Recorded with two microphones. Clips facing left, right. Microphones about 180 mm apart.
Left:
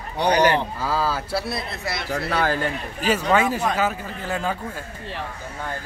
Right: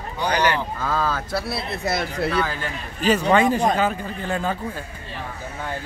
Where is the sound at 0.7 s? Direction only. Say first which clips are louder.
Even; 5° left (ahead or behind).